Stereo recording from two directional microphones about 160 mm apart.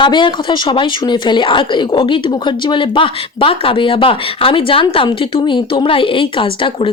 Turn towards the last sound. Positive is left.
turn(degrees=35)  # may be behind; listen again after turning